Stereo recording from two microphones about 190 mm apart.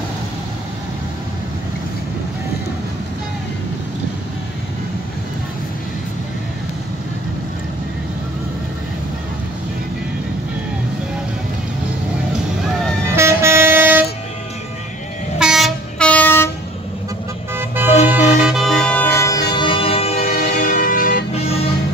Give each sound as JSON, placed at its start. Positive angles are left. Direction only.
{"t": 12.3, "sound": "vehicle", "side_deg": 0}
{"t": 13.1, "sound": "vehicle", "side_deg": -15}
{"t": 15.3, "sound": "train", "side_deg": 0}
{"t": 17.6, "sound": "car", "side_deg": -10}
{"t": 18.0, "sound": "music", "side_deg": -5}
{"t": 19.6, "sound": "music", "side_deg": 30}